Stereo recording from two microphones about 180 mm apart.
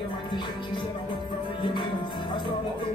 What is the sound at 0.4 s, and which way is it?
Speech, 25° left (ahead or behind).